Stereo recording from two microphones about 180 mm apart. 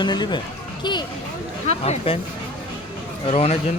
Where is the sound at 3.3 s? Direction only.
35° left (ahead or behind).